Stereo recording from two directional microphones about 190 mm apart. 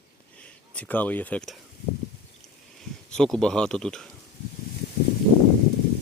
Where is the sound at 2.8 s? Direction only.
5° left (ahead or behind).